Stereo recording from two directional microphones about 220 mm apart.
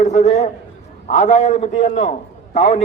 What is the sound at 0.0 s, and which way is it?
A man's voice, 30° left (ahead or behind).